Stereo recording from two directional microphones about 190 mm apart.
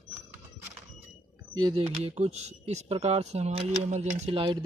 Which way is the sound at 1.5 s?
25° right (ahead or behind).